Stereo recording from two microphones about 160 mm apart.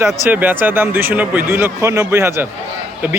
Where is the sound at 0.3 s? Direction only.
10° right (ahead or behind).